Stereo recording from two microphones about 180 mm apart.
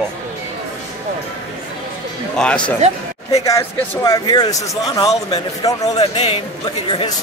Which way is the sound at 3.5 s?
20° left (ahead or behind).